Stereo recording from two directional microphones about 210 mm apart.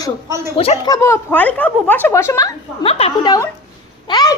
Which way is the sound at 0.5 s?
25° left (ahead or behind).